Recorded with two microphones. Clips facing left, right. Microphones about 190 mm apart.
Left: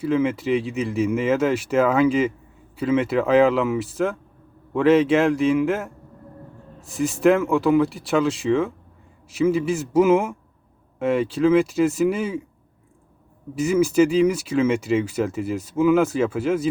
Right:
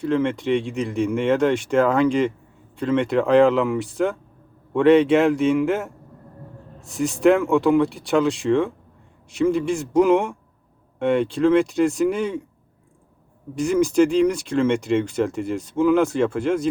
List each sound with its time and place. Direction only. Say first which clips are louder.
0.0 s speech: even; 5° left (ahead or behind)
13.6 s speech: even; 5° left (ahead or behind)